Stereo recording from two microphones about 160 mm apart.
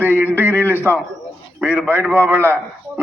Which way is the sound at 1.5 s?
10° right (ahead or behind).